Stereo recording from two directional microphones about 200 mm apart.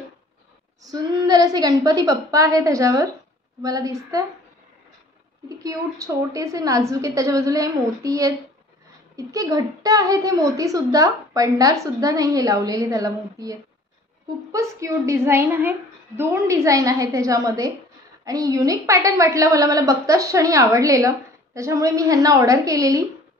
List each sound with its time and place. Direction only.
0.8 s a woman's voice: 20° right (ahead or behind)
5.6 s a woman's voice: 15° right (ahead or behind)